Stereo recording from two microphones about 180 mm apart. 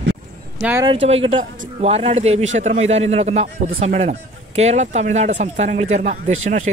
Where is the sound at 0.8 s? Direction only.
35° right (ahead or behind).